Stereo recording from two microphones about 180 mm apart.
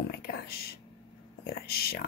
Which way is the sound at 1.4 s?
60° left (ahead or behind).